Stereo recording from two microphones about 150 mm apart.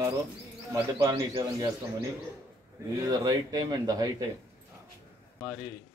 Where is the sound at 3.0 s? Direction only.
25° right (ahead or behind).